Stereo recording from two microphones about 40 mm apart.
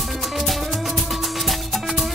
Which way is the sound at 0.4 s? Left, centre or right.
Centre.